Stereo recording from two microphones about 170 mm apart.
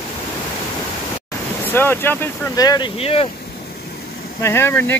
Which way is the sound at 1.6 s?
10° left (ahead or behind).